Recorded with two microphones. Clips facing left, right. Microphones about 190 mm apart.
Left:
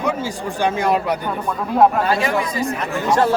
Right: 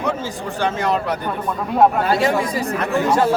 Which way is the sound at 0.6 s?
10° left (ahead or behind).